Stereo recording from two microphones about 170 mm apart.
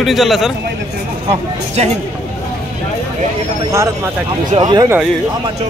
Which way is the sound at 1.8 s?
40° right (ahead or behind).